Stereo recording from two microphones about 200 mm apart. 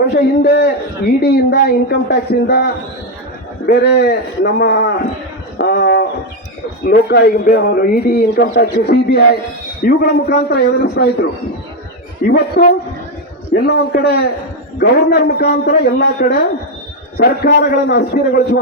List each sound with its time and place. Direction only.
0.0 s a man's voice: 55° left (ahead or behind)
3.7 s a man's voice: 55° left (ahead or behind)